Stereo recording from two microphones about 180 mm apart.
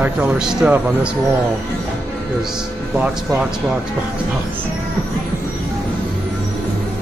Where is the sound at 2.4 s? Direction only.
5° right (ahead or behind).